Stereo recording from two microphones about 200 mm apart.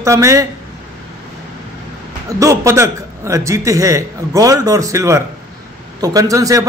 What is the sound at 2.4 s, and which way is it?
A man's voice, 15° right (ahead or behind).